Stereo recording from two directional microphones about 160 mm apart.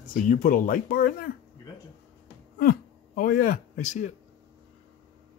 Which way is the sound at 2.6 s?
65° left (ahead or behind).